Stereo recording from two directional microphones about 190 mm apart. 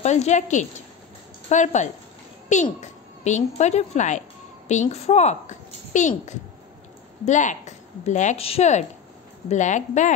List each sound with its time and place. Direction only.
0.0 s a woman's voice: 35° left (ahead or behind)